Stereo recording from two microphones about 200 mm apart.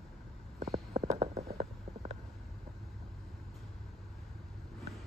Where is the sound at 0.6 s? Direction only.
35° right (ahead or behind).